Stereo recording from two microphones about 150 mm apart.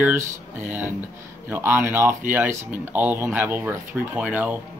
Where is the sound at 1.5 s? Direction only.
15° right (ahead or behind).